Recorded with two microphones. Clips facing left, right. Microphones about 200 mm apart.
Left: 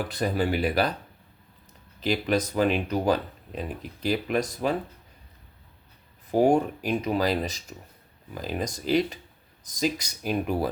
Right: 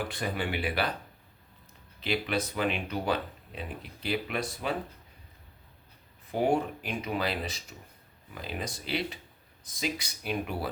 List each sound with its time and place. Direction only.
0.1 s speech: 40° left (ahead or behind)
2.0 s speech: 40° left (ahead or behind)
6.3 s speech: 40° left (ahead or behind)